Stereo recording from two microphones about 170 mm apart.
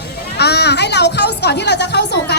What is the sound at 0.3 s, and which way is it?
Speech, 75° left (ahead or behind).